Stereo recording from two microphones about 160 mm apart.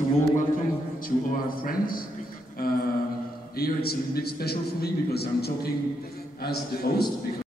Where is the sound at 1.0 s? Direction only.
65° left (ahead or behind); by 6.9 s 80° left.